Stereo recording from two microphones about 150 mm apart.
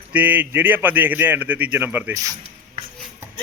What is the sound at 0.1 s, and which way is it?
A man's voice, 10° right (ahead or behind).